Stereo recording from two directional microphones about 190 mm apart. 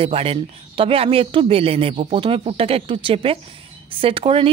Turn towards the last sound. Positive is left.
turn(degrees=-30)  # may be behind; listen again after turning